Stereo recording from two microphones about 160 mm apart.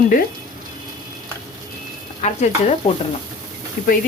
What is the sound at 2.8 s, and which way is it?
Speech, 45° left (ahead or behind).